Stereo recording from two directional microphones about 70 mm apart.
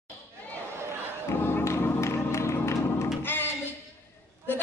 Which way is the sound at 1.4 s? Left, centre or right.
Left.